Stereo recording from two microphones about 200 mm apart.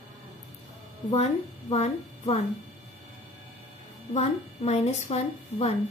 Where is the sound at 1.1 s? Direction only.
35° left (ahead or behind).